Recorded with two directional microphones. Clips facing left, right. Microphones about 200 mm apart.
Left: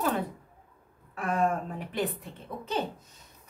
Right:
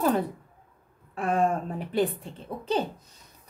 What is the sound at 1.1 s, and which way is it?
A child's voice, 30° right (ahead or behind).